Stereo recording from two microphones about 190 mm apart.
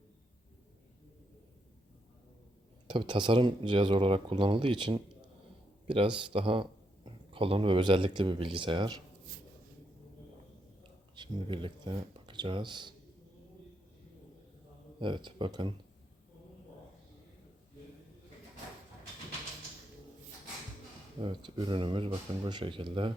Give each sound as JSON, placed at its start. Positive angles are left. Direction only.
{"t": 2.8, "sound": "speech", "side_deg": -25}
{"t": 11.1, "sound": "speech", "side_deg": -25}
{"t": 14.9, "sound": "speech", "side_deg": -25}
{"t": 21.2, "sound": "speech", "side_deg": -25}